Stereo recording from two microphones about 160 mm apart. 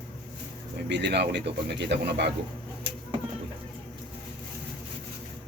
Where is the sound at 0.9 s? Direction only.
90° right.